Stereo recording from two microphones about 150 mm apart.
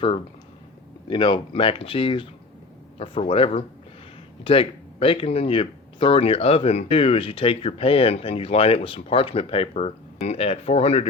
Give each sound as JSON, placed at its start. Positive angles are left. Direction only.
{"t": 1.0, "sound": "speech", "side_deg": 30}